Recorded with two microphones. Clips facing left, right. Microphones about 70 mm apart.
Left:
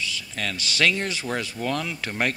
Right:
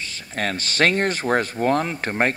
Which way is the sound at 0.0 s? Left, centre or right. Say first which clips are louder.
Right 3 dB; right.